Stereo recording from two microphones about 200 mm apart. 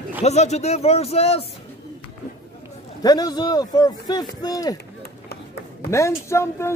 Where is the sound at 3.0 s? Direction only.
20° left (ahead or behind).